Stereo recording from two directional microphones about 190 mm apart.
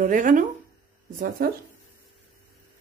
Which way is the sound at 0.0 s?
45° right (ahead or behind).